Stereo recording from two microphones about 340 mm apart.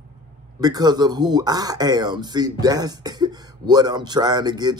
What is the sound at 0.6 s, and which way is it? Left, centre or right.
Speech, centre.